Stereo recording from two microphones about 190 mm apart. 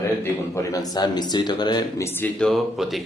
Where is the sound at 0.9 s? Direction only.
20° left (ahead or behind).